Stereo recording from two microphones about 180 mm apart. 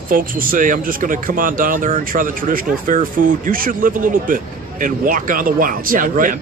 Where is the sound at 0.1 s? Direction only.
50° right (ahead or behind).